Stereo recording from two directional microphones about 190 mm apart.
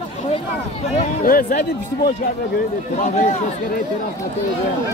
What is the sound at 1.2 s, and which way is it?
Speech, 50° left (ahead or behind).